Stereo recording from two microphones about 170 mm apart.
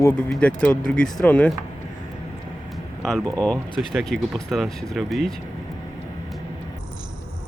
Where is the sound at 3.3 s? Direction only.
5° left (ahead or behind).